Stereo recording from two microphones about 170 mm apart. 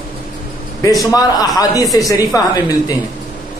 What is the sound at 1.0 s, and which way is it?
A man's voice, 20° left (ahead or behind).